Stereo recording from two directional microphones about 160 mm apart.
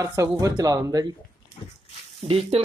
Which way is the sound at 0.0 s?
20° right (ahead or behind).